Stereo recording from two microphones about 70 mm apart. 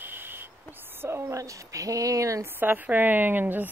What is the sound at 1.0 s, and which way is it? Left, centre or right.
Speech, right.